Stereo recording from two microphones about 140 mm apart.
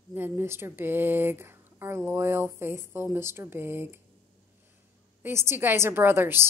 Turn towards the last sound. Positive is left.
turn(degrees=-15)  # may be behind; listen again after turning